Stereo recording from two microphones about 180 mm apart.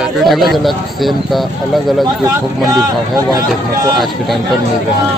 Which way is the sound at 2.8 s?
20° right (ahead or behind).